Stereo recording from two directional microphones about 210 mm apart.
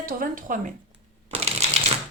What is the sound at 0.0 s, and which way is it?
Speech, 40° right (ahead or behind).